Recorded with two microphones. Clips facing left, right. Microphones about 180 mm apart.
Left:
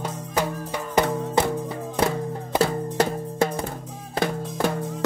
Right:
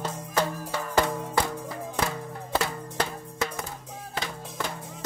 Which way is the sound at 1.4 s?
25° left (ahead or behind).